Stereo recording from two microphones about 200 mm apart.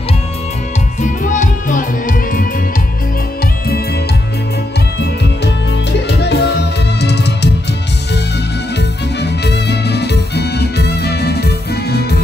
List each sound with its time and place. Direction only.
1.0 s music: 40° left (ahead or behind)
6.0 s music: 55° left (ahead or behind)
8.7 s music: 55° left (ahead or behind)